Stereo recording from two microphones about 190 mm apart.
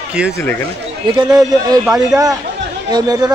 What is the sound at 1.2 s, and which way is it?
Speech, 20° right (ahead or behind).